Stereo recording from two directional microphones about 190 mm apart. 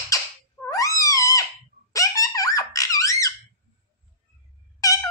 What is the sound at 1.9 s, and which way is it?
Squeak, 15° left (ahead or behind).